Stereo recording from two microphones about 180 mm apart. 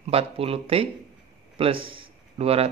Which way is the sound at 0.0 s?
35° right (ahead or behind).